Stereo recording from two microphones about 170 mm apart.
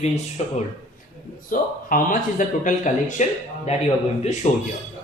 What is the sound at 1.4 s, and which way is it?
Speech, 55° left (ahead or behind).